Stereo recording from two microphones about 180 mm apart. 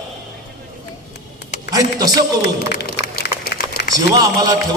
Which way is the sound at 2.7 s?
65° left (ahead or behind).